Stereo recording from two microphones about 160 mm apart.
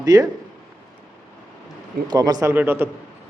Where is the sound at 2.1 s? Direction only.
25° right (ahead or behind).